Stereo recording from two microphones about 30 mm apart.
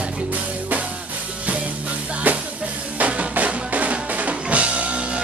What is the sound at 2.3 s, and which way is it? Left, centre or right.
Music, right.